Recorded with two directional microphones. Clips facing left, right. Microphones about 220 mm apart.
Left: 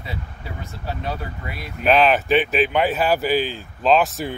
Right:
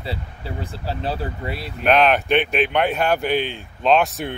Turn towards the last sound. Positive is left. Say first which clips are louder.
# even
turn(degrees=0)  # may be behind; listen again after turning